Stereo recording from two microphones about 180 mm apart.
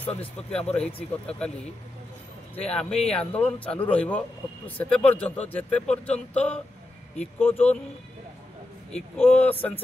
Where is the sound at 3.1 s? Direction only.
5° left (ahead or behind).